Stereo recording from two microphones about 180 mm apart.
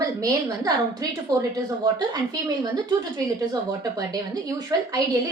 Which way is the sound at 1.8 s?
20° right (ahead or behind).